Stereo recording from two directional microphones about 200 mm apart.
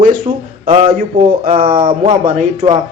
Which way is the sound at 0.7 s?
30° right (ahead or behind).